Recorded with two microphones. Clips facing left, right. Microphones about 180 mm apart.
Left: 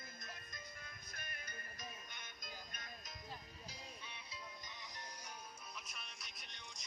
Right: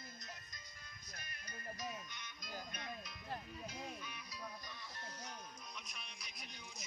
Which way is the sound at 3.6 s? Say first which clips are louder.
Right 7 dB; 30° left (ahead or behind).